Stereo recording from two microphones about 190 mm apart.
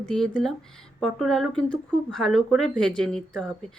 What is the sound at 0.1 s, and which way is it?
Speech, 5° left (ahead or behind).